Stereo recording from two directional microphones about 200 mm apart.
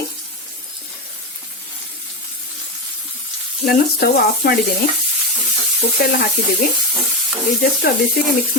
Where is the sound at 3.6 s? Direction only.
50° left (ahead or behind).